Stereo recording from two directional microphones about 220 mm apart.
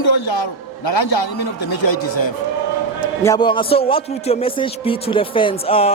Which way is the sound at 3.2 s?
20° left (ahead or behind).